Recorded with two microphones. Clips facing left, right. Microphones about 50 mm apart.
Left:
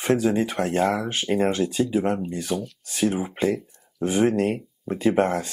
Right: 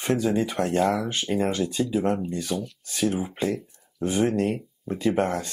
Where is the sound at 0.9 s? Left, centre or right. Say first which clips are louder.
Left 2 dB; left.